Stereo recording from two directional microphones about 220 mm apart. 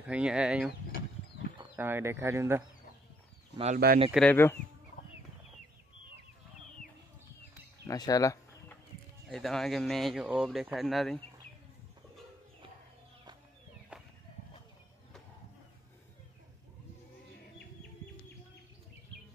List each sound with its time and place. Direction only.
0.1 s speech: 5° right (ahead or behind)
1.8 s speech: 10° right (ahead or behind)
3.7 s speech: 40° right (ahead or behind)
4.1 s speech: 5° left (ahead or behind)
7.8 s a sound: 15° left (ahead or behind)
9.3 s speech: centre (ahead or behind)